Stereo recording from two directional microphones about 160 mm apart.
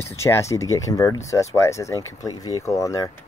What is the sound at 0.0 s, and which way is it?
Speech, 15° left (ahead or behind).